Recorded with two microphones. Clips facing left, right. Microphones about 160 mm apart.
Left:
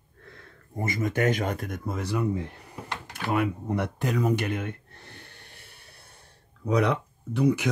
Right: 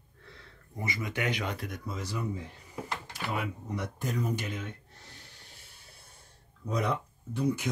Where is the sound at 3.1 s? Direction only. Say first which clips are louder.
Left 10 dB; 55° left (ahead or behind).